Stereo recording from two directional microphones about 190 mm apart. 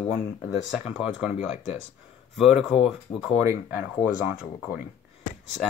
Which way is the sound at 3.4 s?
15° right (ahead or behind).